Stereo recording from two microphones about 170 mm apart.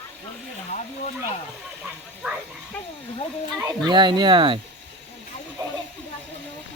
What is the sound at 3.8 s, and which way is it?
Speech, 25° right (ahead or behind).